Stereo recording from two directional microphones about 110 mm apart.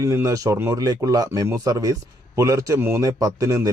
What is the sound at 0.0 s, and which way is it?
A man's voice, 30° right (ahead or behind).